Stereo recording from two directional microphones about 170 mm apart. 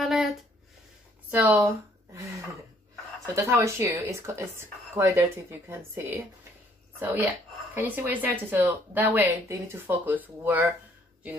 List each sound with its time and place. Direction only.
0.0 s a sound: centre (ahead or behind)
1.3 s speech: 10° right (ahead or behind)
3.3 s speech: 15° right (ahead or behind)